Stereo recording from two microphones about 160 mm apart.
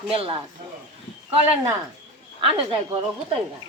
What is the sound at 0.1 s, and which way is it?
Speech, 35° right (ahead or behind).